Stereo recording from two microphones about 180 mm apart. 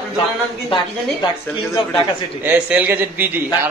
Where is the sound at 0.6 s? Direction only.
25° left (ahead or behind).